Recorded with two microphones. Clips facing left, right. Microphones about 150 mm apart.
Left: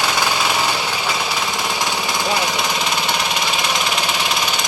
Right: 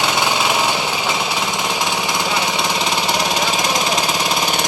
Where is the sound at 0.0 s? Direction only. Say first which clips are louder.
Right 1 dB; 20° right (ahead or behind).